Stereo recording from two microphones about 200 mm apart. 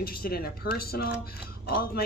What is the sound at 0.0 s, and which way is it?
Speech, 50° left (ahead or behind).